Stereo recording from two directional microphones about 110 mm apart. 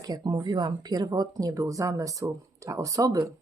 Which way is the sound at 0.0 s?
35° right (ahead or behind).